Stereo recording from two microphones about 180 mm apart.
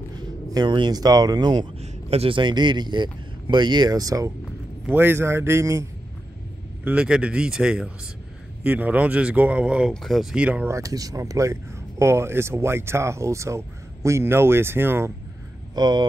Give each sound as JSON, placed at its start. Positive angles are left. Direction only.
{"t": 0.1, "sound": "speech", "side_deg": -25}
{"t": 1.8, "sound": "a man's voice", "side_deg": -35}